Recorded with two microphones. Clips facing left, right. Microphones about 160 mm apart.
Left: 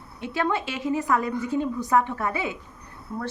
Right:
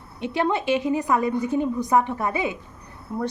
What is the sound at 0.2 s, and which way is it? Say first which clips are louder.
A woman's voice: right 3 dB; 20° right (ahead or behind).